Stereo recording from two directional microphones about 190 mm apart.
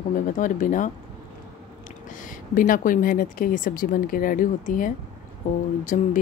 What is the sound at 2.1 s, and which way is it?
Speech, 45° left (ahead or behind).